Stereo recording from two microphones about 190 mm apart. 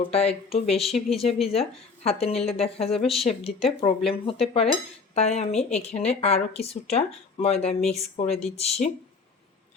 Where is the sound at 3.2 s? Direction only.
30° left (ahead or behind).